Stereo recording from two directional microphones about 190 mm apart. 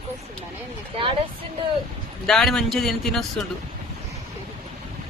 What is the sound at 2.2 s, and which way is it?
Speech, centre (ahead or behind).